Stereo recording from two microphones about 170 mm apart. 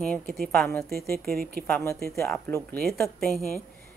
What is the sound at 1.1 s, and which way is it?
Speech, 65° right (ahead or behind).